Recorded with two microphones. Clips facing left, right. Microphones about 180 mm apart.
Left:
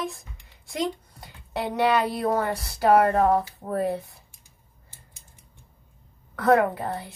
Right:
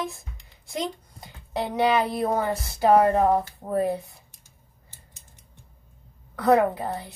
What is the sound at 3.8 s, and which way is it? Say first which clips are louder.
Speech: even; centre (ahead or behind).